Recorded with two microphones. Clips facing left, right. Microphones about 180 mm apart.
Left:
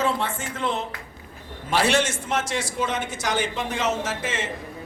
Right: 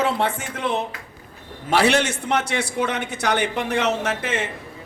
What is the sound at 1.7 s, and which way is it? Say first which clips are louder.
A man's voice: right 3 dB; 65° right (ahead or behind).